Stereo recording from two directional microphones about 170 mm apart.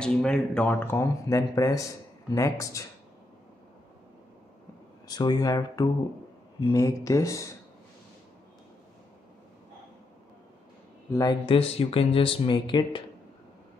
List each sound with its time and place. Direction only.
0.0 s speech: 5° left (ahead or behind)
5.0 s speech: 25° left (ahead or behind)
11.1 s speech: 20° left (ahead or behind)
11.4 s speech: 35° left (ahead or behind)